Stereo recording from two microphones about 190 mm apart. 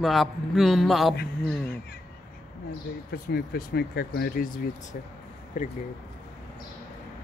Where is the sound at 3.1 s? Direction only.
55° left (ahead or behind); by 5.7 s 40° left (ahead or behind).